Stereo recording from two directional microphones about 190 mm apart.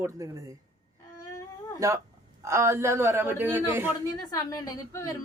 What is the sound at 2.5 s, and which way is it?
Speech, 15° right (ahead or behind).